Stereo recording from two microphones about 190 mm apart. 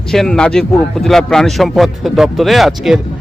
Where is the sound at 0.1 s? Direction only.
Centre (ahead or behind).